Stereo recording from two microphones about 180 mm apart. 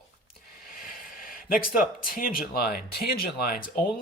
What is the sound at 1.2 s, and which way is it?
Speech, 50° left (ahead or behind).